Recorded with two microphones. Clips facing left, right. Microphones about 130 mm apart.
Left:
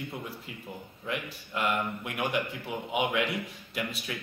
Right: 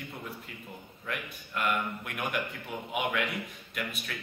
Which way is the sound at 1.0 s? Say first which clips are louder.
Left 3 dB; 25° left (ahead or behind).